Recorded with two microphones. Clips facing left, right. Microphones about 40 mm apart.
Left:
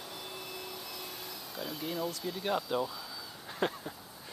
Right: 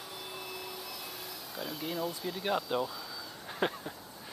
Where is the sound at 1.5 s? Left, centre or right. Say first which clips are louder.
Even; centre.